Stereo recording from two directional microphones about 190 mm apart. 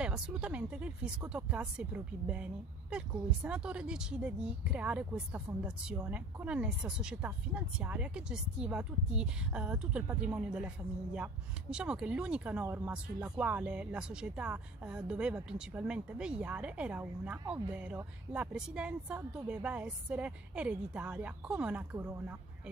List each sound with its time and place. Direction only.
0.0 s speech: 5° right (ahead or behind)
11.7 s speech: 5° right (ahead or behind)